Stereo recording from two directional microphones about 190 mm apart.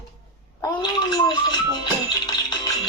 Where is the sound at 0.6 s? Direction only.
20° left (ahead or behind).